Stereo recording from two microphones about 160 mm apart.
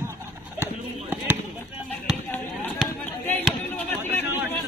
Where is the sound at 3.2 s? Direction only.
10° left (ahead or behind).